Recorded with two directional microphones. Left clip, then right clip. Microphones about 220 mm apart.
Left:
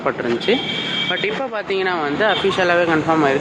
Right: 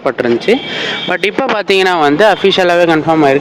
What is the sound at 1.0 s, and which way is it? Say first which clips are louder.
Speech: right 8 dB; 45° right (ahead or behind).